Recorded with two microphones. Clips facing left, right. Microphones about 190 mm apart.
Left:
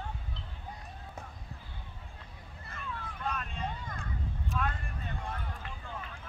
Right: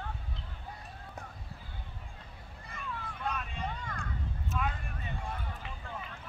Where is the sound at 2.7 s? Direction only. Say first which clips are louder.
Even; centre (ahead or behind).